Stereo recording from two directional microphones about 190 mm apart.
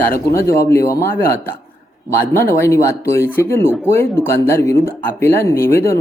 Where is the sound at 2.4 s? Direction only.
15° left (ahead or behind).